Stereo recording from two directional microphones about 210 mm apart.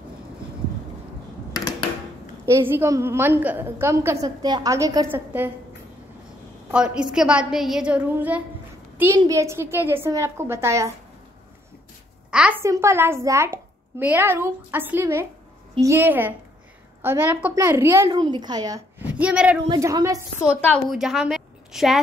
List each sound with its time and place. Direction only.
2.4 s a woman's voice: 10° right (ahead or behind)
6.7 s a woman's voice: 5° right (ahead or behind)
9.1 s a woman's voice: 20° right (ahead or behind)
12.3 s a woman's voice: 5° right (ahead or behind)
19.0 s a woman's voice: 5° right (ahead or behind)
20.6 s a woman's voice: centre (ahead or behind)